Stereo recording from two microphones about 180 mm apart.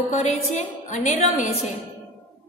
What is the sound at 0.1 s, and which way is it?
A woman's voice, 40° left (ahead or behind).